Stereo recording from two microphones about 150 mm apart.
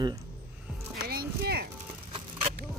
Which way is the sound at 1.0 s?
90° right.